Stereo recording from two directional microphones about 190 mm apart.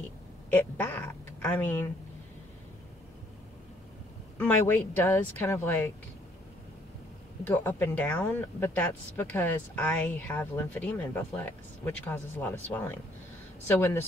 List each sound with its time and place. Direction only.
0.5 s speech: 10° left (ahead or behind)
4.4 s speech: 10° left (ahead or behind)
7.4 s speech: 10° left (ahead or behind)